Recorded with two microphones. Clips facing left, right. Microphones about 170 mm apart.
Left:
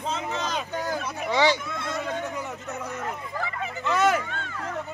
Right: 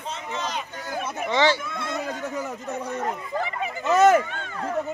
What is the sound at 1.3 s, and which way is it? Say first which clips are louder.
Speech: right 1 dB; 10° left (ahead or behind).